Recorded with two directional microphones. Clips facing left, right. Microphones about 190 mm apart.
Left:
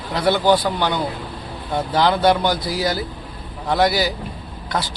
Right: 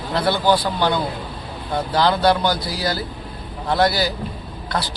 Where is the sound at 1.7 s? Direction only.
20° left (ahead or behind).